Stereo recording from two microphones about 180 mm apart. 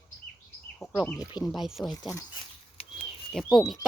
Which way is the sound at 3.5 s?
Centre (ahead or behind).